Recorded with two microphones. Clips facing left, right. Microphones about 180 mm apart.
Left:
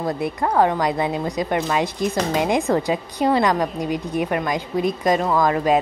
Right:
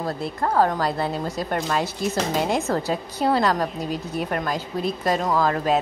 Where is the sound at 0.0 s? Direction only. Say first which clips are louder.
Left 3 dB; 15° left (ahead or behind).